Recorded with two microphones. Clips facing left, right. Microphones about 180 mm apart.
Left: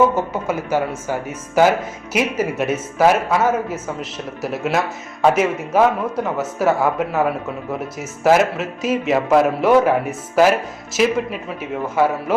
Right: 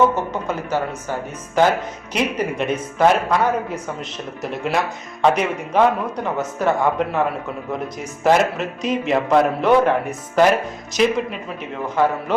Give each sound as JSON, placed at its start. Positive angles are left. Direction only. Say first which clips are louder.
{"t": 0.4, "sound": "a man's voice", "louder": "left 3 dB", "side_deg": 10}